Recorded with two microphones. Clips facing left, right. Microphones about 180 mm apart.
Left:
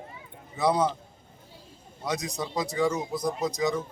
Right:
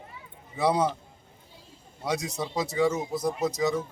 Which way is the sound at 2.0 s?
10° right (ahead or behind).